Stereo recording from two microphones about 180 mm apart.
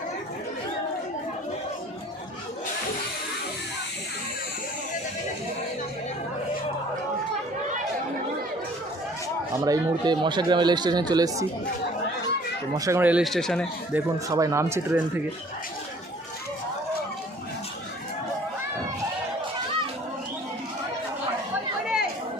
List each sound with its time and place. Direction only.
9.6 s speech: 20° right (ahead or behind)
12.7 s speech: 15° right (ahead or behind); by 13.7 s centre (ahead or behind)
13.9 s speech: 20° right (ahead or behind)